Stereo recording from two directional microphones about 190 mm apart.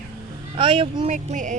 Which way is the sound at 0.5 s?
25° right (ahead or behind).